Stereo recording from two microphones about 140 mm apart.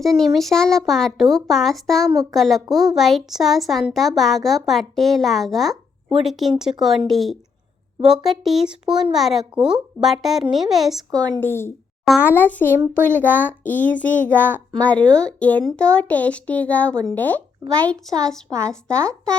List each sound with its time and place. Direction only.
0.0 s speech: centre (ahead or behind)
11.3 s speech: 15° left (ahead or behind)
18.5 s speech: 25° right (ahead or behind)